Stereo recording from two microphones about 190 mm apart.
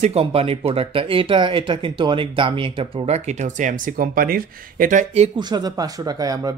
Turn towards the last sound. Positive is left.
turn(degrees=-20)  # may be behind; listen again after turning